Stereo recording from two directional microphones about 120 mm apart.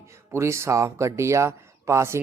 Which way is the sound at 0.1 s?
25° right (ahead or behind).